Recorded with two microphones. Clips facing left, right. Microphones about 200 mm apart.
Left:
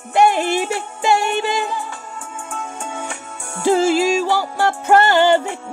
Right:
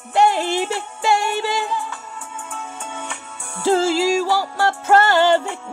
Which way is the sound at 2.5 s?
45° left (ahead or behind).